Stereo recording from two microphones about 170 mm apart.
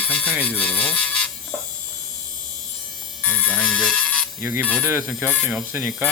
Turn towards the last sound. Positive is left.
turn(degrees=-10)  # may be behind; listen again after turning